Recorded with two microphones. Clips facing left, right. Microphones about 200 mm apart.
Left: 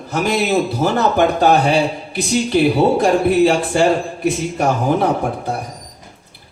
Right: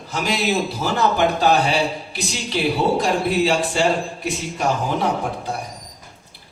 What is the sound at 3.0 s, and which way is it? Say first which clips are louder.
A man's voice: left 6 dB; 50° left (ahead or behind).